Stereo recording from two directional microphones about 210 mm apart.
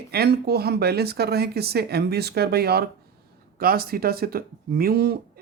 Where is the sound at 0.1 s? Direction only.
50° right (ahead or behind).